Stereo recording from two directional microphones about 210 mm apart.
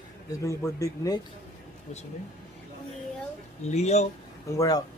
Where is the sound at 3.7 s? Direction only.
30° left (ahead or behind).